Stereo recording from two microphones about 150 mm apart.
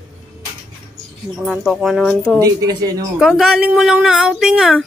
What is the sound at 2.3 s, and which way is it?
Speech, 25° right (ahead or behind).